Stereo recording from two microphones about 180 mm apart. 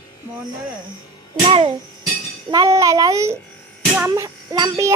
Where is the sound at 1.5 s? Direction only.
30° right (ahead or behind).